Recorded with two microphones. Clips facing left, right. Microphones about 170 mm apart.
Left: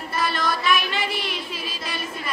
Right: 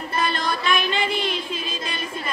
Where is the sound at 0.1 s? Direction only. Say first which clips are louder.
Even; 25° right (ahead or behind).